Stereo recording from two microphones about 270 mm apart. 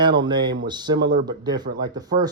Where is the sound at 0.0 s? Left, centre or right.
Centre.